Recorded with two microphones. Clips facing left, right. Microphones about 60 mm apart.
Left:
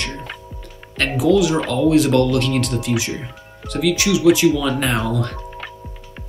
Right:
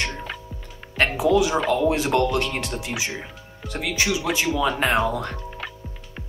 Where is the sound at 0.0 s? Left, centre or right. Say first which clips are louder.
Even; centre.